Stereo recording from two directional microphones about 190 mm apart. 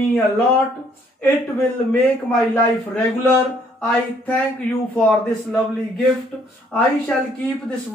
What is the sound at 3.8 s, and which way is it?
A man's voice, 5° left (ahead or behind).